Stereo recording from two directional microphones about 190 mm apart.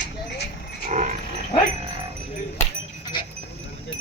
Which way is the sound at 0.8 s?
40° right (ahead or behind).